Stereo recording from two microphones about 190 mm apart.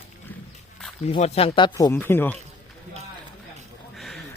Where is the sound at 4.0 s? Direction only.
Centre (ahead or behind).